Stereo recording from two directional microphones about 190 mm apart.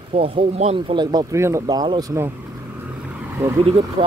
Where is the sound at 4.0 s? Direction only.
30° right (ahead or behind).